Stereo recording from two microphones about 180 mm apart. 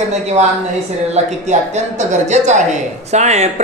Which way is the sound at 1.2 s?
35° right (ahead or behind).